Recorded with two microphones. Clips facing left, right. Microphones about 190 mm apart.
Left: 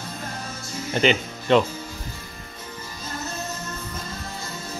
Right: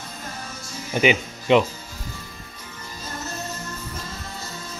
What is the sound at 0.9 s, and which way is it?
Speech, 10° right (ahead or behind).